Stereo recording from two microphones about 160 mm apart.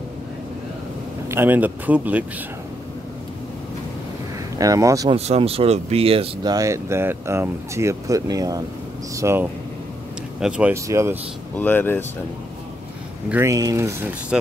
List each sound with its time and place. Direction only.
1.3 s speech: 10° right (ahead or behind)
4.6 s speech: 20° right (ahead or behind)
5.1 s speech: 40° right (ahead or behind)
6.5 s speech: 20° right (ahead or behind)
10.4 s speech: 5° right (ahead or behind)
10.7 s speech: 15° right (ahead or behind)
11.5 s speech: 10° left (ahead or behind)
13.3 s speech: 15° right (ahead or behind)
14.3 s speech: 5° right (ahead or behind)